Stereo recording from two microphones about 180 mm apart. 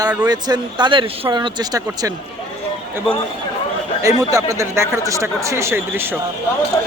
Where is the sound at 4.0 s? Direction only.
15° right (ahead or behind).